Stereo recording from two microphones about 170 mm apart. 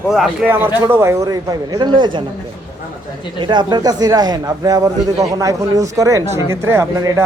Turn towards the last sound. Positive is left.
turn(degrees=-15)  # may be behind; listen again after turning